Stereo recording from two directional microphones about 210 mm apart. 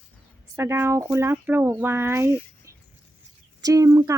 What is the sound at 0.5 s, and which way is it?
Speech, 10° right (ahead or behind).